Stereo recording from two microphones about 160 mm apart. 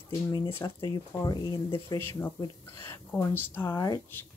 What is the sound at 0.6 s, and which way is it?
Speech, 20° left (ahead or behind).